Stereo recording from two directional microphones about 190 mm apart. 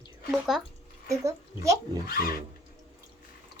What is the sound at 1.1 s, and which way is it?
Speech, 15° right (ahead or behind).